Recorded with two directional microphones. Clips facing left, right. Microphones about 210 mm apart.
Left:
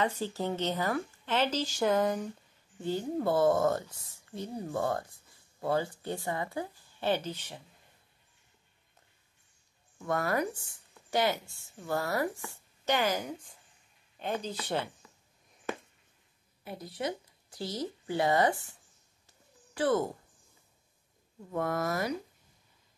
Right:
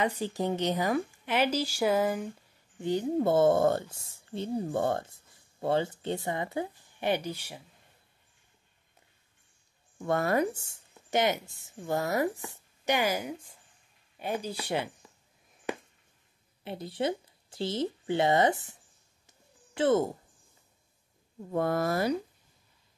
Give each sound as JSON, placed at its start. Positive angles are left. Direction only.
{"t": 0.0, "sound": "speech", "side_deg": -15}
{"t": 2.8, "sound": "a woman's voice", "side_deg": -20}
{"t": 10.0, "sound": "speech", "side_deg": -25}
{"t": 16.6, "sound": "speech", "side_deg": -25}
{"t": 19.2, "sound": "a sound", "side_deg": -25}
{"t": 21.5, "sound": "speech", "side_deg": -30}